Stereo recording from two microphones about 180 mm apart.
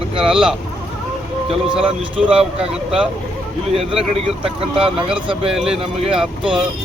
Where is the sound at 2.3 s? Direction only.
30° right (ahead or behind).